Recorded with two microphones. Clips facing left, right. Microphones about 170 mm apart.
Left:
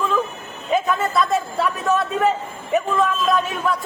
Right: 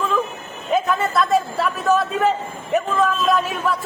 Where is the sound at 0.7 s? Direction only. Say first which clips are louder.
Even; centre (ahead or behind).